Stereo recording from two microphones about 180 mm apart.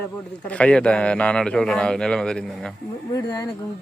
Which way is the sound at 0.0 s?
10° left (ahead or behind).